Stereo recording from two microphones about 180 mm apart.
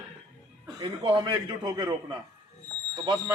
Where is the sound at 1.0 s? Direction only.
25° right (ahead or behind).